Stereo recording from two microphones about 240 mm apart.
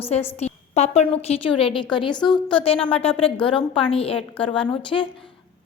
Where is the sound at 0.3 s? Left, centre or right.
Left.